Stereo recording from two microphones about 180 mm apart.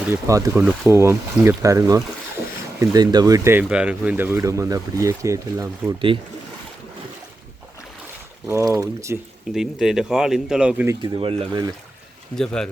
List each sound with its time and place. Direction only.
0.1 s speech: 15° right (ahead or behind)
8.4 s speech: 15° right (ahead or behind)
9.6 s speech: 5° right (ahead or behind)
11.0 s speech: 30° right (ahead or behind)
12.4 s speech: 5° left (ahead or behind)